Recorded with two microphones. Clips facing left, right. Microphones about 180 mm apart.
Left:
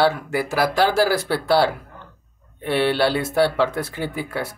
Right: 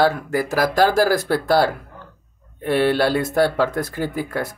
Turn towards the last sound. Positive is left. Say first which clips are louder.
# right 2 dB
turn(degrees=-45)  # may be behind; listen again after turning